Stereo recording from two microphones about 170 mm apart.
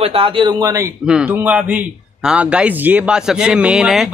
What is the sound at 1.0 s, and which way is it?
A man's voice, 5° right (ahead or behind).